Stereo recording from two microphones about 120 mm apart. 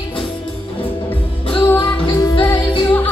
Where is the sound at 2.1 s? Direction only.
35° left (ahead or behind).